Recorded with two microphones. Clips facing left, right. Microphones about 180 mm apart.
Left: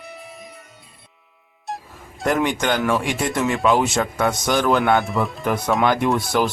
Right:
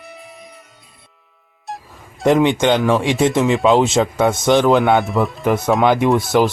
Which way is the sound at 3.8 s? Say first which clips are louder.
Right 5 dB; 25° right (ahead or behind).